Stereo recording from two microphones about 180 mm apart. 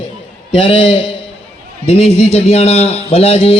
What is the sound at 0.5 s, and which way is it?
A man's voice, 30° left (ahead or behind).